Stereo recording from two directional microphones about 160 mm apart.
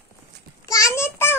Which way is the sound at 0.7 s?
20° left (ahead or behind).